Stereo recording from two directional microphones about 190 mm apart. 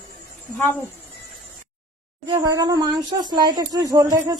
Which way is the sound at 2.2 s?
20° right (ahead or behind).